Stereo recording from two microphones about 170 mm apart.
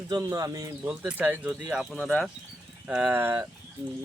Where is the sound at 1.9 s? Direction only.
5° left (ahead or behind).